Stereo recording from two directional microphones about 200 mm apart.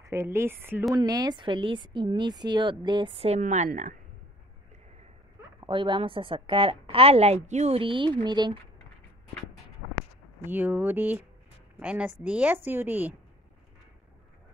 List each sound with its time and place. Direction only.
0.0 s a woman's voice: 15° right (ahead or behind); by 3.9 s 40° right (ahead or behind)
5.6 s a woman's voice: 25° right (ahead or behind)
10.4 s a woman's voice: 10° right (ahead or behind)